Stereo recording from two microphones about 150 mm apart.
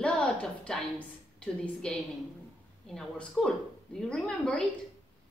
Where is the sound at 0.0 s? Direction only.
5° left (ahead or behind).